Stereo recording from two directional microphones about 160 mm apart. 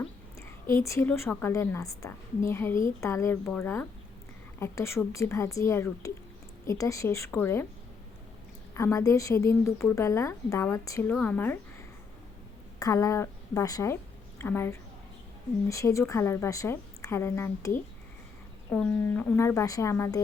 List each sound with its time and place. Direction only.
0.3 s a woman's voice: 15° left (ahead or behind)
8.7 s a woman's voice: 20° left (ahead or behind)
12.8 s a woman's voice: 20° left (ahead or behind)